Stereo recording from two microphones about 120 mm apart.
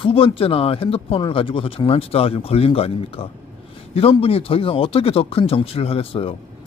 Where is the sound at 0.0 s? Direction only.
50° left (ahead or behind).